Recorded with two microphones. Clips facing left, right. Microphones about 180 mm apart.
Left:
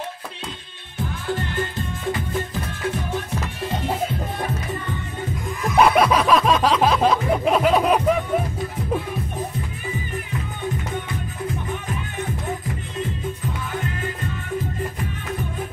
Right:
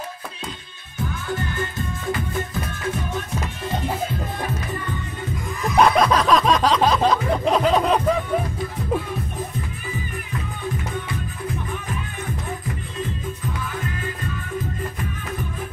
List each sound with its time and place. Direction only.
0.9 s music: 30° left (ahead or behind)
5.6 s music: 5° left (ahead or behind)